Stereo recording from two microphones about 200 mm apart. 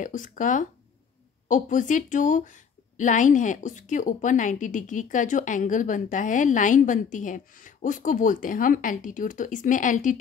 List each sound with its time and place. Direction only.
0.0 s a woman's voice: 40° left (ahead or behind)